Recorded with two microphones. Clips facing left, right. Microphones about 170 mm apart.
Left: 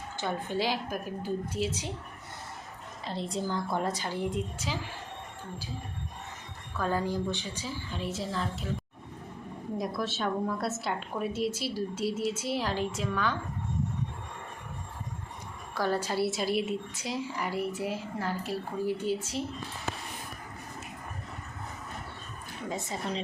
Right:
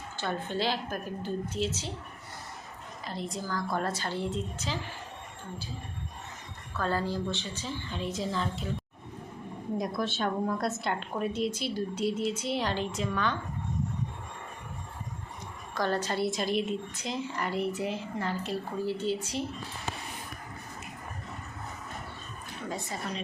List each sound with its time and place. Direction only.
0.2 s a woman's voice: 15° left (ahead or behind)
3.1 s a woman's voice: 30° left (ahead or behind); by 4.8 s 10° left (ahead or behind)
6.7 s a woman's voice: 15° left (ahead or behind)
9.7 s a woman's voice: centre (ahead or behind)
15.7 s a woman's voice: 10° left (ahead or behind)
22.7 s speech: 25° left (ahead or behind)